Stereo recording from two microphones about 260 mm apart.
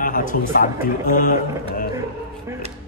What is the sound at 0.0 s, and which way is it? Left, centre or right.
A man's voice, left.